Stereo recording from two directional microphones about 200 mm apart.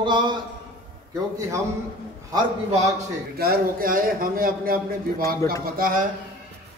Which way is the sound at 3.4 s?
50° right (ahead or behind).